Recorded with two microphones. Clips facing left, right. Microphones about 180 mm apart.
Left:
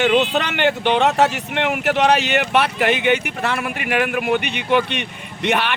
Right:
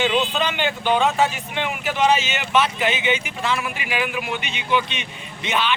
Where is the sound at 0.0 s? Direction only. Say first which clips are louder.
Left 4 dB; 65° left (ahead or behind).